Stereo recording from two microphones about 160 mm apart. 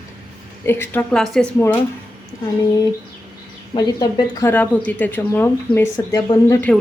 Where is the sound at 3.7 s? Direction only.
25° left (ahead or behind).